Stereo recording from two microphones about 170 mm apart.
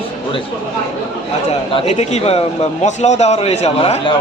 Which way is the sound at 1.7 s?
40° left (ahead or behind).